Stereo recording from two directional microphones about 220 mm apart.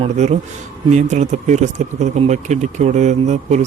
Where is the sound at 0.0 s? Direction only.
30° right (ahead or behind).